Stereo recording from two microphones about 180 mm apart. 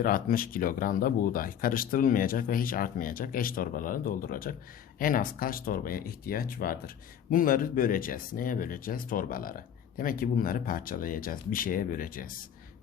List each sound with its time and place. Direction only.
0.0 s speech: 50° left (ahead or behind)